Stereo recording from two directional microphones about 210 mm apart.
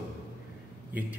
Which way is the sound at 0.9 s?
10° right (ahead or behind).